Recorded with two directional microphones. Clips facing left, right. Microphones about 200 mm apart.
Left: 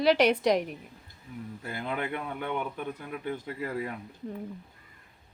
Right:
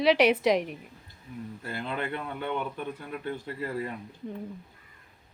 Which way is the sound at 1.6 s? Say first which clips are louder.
Even; 15° left (ahead or behind).